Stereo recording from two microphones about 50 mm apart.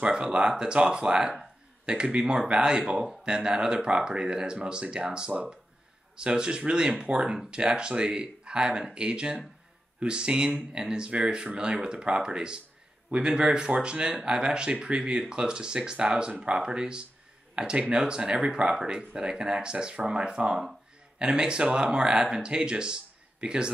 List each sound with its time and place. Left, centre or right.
0.0 s speech: centre